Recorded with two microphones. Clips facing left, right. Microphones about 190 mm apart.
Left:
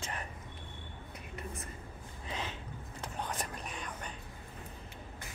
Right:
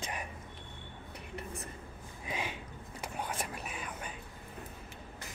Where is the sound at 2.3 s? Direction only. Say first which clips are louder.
Right 2 dB; 10° right (ahead or behind).